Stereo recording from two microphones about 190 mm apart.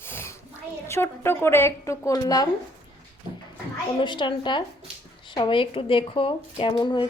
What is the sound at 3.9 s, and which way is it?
Speech, 25° left (ahead or behind).